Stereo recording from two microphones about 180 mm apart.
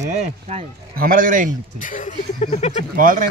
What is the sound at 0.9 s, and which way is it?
Speech, 50° right (ahead or behind).